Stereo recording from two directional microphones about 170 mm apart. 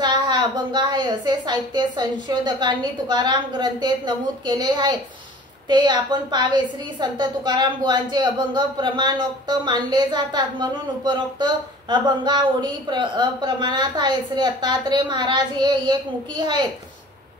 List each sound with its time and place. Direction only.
0.0 s a woman's voice: 25° right (ahead or behind)